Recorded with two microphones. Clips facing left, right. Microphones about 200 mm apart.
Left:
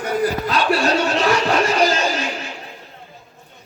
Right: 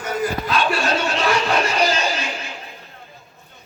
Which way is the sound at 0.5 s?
40° left (ahead or behind).